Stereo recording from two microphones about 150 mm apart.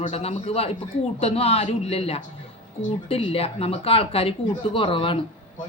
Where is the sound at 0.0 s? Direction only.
45° left (ahead or behind).